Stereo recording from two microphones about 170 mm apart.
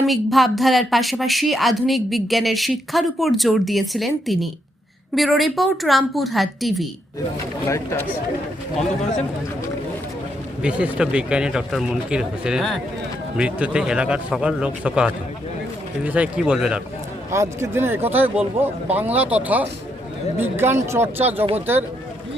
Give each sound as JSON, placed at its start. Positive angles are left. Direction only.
{"t": 0.0, "sound": "speech", "side_deg": 0}
{"t": 10.6, "sound": "speech", "side_deg": -5}
{"t": 17.3, "sound": "speech", "side_deg": -15}
{"t": 21.3, "sound": "speech", "side_deg": -35}